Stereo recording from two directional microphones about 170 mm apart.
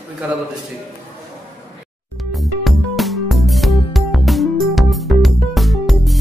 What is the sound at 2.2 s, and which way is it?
Music, centre (ahead or behind).